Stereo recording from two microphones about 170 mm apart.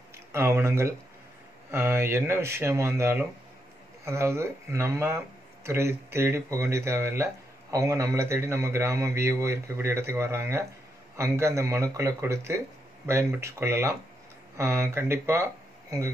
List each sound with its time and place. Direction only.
0.3 s a man's voice: 15° right (ahead or behind)